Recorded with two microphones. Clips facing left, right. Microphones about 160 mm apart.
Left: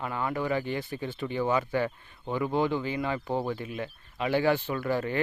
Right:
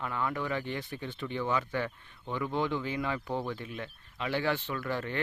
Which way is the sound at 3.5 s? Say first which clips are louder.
Left 5 dB; 5° left (ahead or behind).